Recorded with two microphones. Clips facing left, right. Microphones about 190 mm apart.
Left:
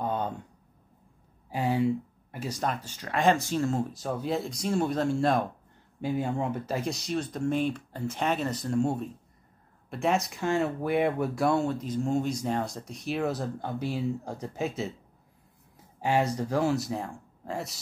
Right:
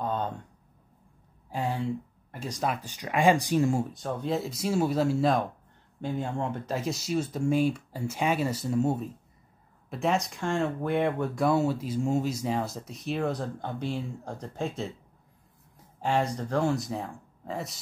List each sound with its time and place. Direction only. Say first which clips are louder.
0.0 s a sound: even; 10° left (ahead or behind)
1.5 s speech: left 4 dB; 5° left (ahead or behind)
2.6 s speech: right 3 dB; 10° right (ahead or behind)
3.9 s speech: even; 5° left (ahead or behind)
16.0 s speech: left 1 dB; 5° left (ahead or behind)